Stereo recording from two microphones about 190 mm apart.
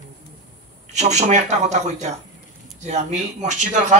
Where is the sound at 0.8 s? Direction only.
35° right (ahead or behind).